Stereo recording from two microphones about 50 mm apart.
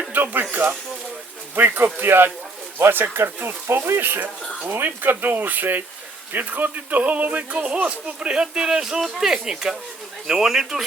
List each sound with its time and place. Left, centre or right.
0.1 s speech: right
1.5 s speech: right; by 10.8 s centre